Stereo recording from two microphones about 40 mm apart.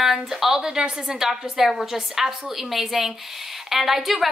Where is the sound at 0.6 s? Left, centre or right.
Centre.